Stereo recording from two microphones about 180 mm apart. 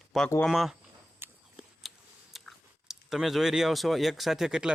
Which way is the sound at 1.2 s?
10° right (ahead or behind).